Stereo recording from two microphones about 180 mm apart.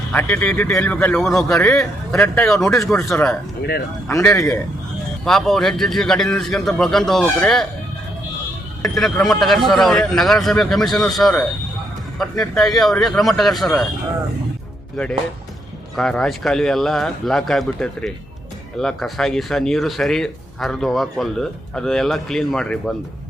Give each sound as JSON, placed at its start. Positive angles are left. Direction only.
{"t": 0.1, "sound": "speech", "side_deg": 10}
{"t": 3.0, "sound": "speech", "side_deg": 15}
{"t": 5.2, "sound": "speech", "side_deg": 0}
{"t": 8.8, "sound": "speech", "side_deg": 0}
{"t": 16.0, "sound": "speech", "side_deg": 5}